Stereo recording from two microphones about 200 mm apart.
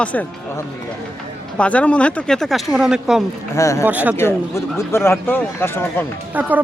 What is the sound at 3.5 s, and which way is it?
Speech, 15° left (ahead or behind).